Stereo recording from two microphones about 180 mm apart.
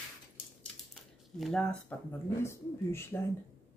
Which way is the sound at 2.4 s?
15° left (ahead or behind).